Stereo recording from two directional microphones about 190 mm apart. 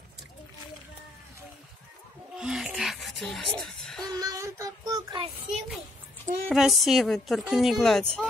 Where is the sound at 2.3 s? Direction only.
5° right (ahead or behind).